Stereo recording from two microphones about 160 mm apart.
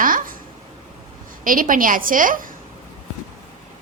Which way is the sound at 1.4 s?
60° right (ahead or behind).